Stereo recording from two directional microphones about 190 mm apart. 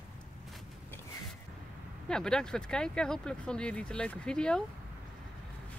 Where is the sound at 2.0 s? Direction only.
5° left (ahead or behind).